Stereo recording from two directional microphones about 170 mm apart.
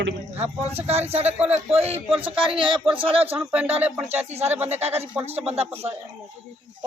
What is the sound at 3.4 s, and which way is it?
Speech, 5° right (ahead or behind).